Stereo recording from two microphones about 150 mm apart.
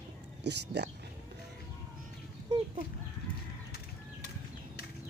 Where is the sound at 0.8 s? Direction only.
90° right.